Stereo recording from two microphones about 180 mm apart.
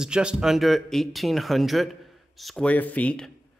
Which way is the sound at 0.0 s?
5° right (ahead or behind).